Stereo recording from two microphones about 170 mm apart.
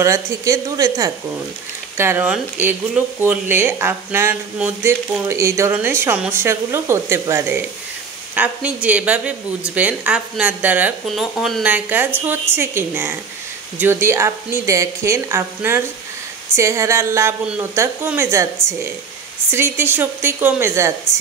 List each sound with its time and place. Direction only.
0.0 s speech: 20° right (ahead or behind)